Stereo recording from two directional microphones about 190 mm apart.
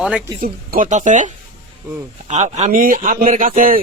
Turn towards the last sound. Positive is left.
turn(degrees=-45)  # may be behind; listen again after turning